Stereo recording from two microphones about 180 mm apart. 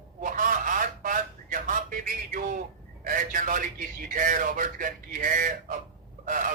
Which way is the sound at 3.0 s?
50° right (ahead or behind).